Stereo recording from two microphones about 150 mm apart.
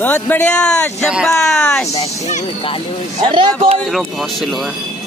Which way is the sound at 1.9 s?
45° left (ahead or behind).